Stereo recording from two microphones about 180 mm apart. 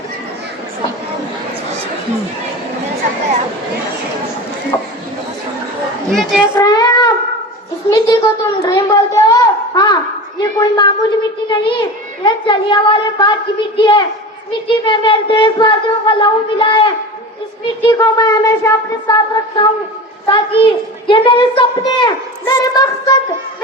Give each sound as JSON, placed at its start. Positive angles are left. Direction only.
{"t": 4.7, "sound": "run", "side_deg": 25}
{"t": 6.1, "sound": "a woman's voice", "side_deg": 0}
{"t": 6.5, "sound": "child singing", "side_deg": 20}
{"t": 7.9, "sound": "a child's voice", "side_deg": 25}
{"t": 12.2, "sound": "a child's voice", "side_deg": 25}